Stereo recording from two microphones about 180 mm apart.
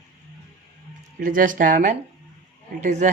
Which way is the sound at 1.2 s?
50° right (ahead or behind).